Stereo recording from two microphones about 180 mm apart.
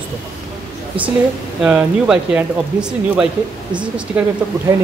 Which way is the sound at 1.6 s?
5° right (ahead or behind).